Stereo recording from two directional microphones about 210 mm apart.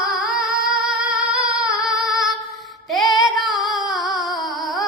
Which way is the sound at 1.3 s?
5° right (ahead or behind).